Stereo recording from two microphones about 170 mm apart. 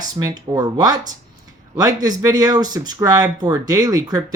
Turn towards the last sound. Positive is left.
turn(degrees=-20)  # may be behind; listen again after turning